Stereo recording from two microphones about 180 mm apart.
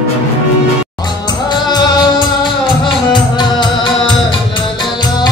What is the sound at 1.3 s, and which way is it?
Music, 25° left (ahead or behind).